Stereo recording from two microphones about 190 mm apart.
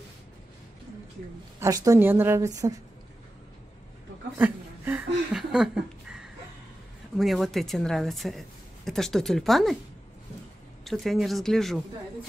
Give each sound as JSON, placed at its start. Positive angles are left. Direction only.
{"t": 1.6, "sound": "a woman's voice", "side_deg": -15}
{"t": 4.4, "sound": "a sound", "side_deg": -10}
{"t": 7.2, "sound": "a woman's voice", "side_deg": 0}
{"t": 10.8, "sound": "a woman's voice", "side_deg": 0}